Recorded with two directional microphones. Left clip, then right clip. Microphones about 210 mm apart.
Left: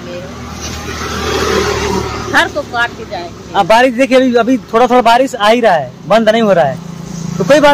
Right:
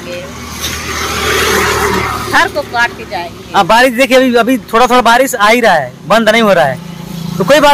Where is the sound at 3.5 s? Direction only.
20° right (ahead or behind).